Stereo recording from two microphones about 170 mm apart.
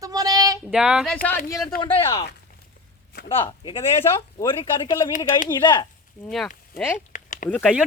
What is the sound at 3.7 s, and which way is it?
Speech, 20° left (ahead or behind).